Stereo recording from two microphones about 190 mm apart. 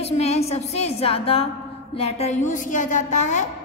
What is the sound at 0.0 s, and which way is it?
A woman's voice, 35° left (ahead or behind).